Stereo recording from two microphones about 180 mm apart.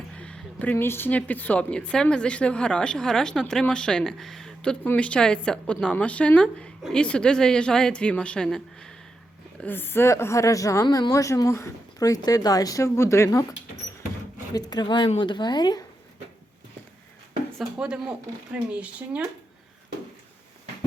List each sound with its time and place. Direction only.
0.2 s a woman's voice: 5° left (ahead or behind)
14.5 s speech: 20° left (ahead or behind)
17.6 s a woman's voice: 5° right (ahead or behind)